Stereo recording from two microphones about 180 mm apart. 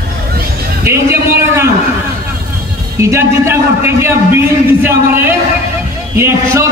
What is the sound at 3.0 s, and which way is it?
A man's voice, 15° right (ahead or behind).